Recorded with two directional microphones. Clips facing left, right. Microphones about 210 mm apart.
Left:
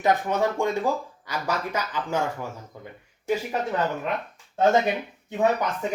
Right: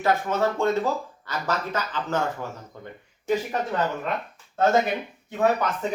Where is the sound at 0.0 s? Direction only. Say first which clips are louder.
Even; 15° left (ahead or behind).